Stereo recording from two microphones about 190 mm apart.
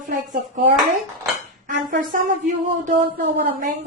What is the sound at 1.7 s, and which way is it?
Speech, 40° right (ahead or behind).